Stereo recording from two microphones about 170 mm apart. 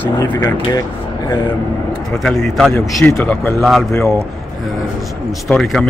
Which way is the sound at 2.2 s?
Centre (ahead or behind).